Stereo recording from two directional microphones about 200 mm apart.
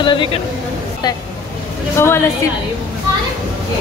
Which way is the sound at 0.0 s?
25° left (ahead or behind).